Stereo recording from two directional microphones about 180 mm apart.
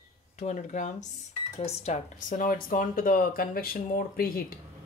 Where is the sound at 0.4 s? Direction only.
40° left (ahead or behind).